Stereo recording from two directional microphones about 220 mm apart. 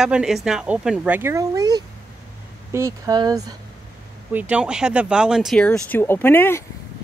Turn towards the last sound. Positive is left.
turn(degrees=10)  # may be behind; listen again after turning